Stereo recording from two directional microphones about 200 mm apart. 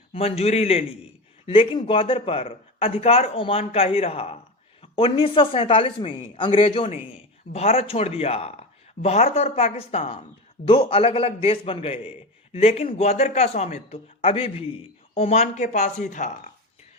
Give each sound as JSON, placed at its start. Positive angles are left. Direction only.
{"t": 0.1, "sound": "a man's voice", "side_deg": 30}